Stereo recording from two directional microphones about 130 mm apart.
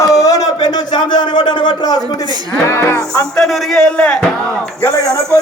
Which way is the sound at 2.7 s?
20° left (ahead or behind).